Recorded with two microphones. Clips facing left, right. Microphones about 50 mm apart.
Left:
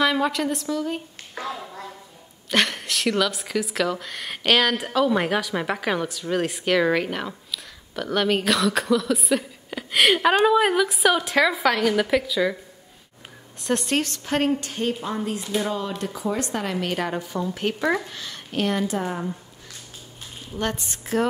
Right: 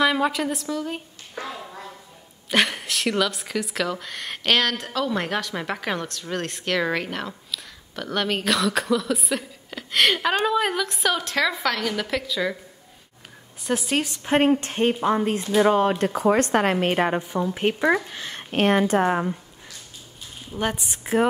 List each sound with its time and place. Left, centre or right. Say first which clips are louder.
0.0 s a woman's voice: even; centre
2.5 s a woman's voice: right 1 dB; centre
13.6 s speech: left 1 dB; centre
14.1 s a woman's voice: right 4 dB; right
16.7 s a woman's voice: right 4 dB; right; by 18.1 s centre
18.1 s a woman's voice: right 2 dB; right
20.5 s a woman's voice: right 1 dB; centre